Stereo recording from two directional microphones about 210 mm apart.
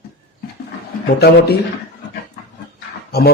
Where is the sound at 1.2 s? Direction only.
50° left (ahead or behind).